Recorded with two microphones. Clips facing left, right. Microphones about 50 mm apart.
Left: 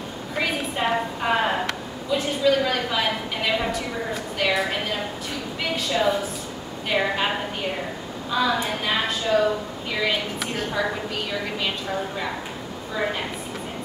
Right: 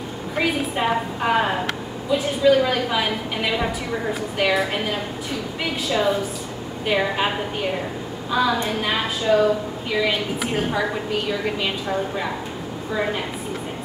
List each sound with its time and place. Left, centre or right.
0.4 s a sound: centre
2.0 s a woman's voice: centre
10.5 s a woman's voice: centre
10.8 s a woman's voice: centre